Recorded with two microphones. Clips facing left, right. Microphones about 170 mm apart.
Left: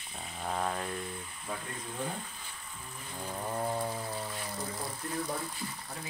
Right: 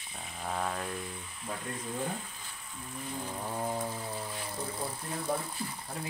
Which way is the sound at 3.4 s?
Centre (ahead or behind).